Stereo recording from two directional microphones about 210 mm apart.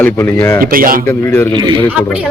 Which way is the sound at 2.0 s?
5° right (ahead or behind).